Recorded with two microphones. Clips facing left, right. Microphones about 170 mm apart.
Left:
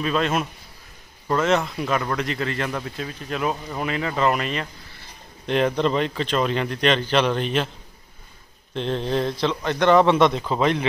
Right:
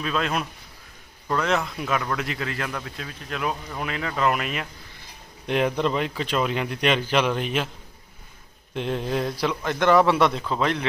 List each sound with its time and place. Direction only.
0.0 s speech: centre (ahead or behind)
8.7 s speech: 10° right (ahead or behind)
9.5 s a man's voice: 20° left (ahead or behind)
9.8 s speech: 5° right (ahead or behind)
10.5 s speech: 5° left (ahead or behind)